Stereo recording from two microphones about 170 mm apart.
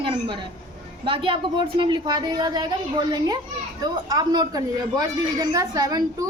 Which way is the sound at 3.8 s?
25° right (ahead or behind).